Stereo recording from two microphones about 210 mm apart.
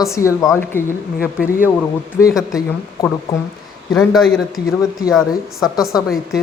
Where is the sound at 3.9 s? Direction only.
Centre (ahead or behind).